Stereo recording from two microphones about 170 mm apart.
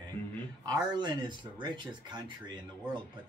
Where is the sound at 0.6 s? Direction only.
25° right (ahead or behind).